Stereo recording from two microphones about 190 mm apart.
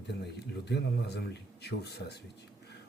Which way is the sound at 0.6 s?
60° left (ahead or behind).